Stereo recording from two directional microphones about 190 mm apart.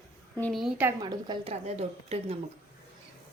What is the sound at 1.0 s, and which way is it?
A woman's voice, 25° right (ahead or behind).